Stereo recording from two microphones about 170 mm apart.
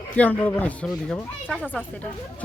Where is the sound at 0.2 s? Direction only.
10° left (ahead or behind).